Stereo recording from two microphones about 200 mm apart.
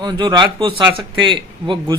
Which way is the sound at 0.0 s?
20° right (ahead or behind).